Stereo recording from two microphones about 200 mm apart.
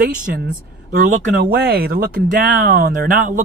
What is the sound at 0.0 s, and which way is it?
Speech, 45° right (ahead or behind).